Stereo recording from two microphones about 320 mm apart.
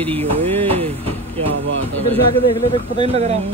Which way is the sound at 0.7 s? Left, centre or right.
Centre.